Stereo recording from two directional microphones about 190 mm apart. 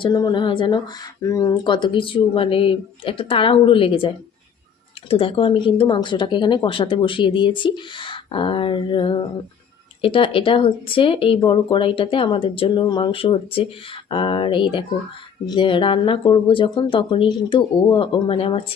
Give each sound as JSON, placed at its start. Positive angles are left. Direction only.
{"t": 0.0, "sound": "speech", "side_deg": 20}